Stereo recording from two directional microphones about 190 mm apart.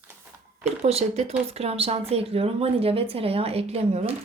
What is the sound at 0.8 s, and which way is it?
Speech, 35° right (ahead or behind).